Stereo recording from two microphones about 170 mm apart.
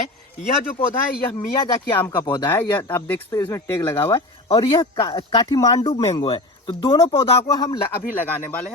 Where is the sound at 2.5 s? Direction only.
10° left (ahead or behind).